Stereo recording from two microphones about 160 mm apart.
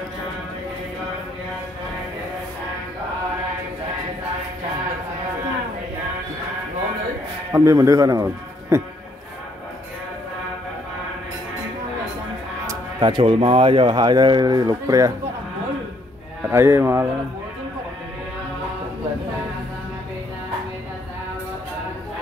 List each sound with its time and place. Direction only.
7.5 s speech: 20° right (ahead or behind)
12.6 s speech: 30° right (ahead or behind)
16.4 s speech: 15° right (ahead or behind)